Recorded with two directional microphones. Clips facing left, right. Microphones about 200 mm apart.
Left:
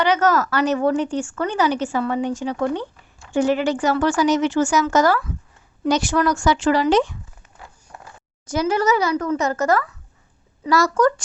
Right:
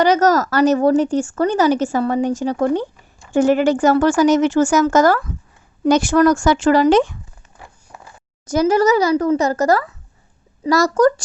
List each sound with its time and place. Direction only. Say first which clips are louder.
0.0 s a woman's voice: right 4 dB; 40° right (ahead or behind)
7.9 s a sound: even; 15° right (ahead or behind)
8.4 s a woman's voice: right 5 dB; 40° right (ahead or behind)